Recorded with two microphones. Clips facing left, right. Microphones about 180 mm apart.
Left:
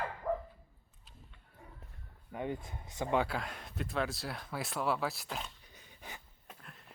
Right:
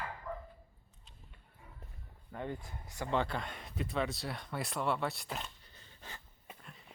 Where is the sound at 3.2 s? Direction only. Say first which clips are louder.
Left 1 dB; 5° left (ahead or behind).